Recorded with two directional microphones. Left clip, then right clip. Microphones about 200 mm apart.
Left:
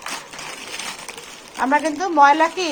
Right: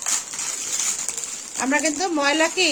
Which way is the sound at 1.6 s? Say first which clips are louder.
Left 3 dB; 10° right (ahead or behind).